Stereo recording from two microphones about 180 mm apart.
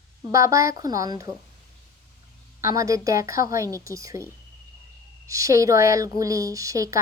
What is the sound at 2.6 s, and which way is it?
Speech, 15° right (ahead or behind).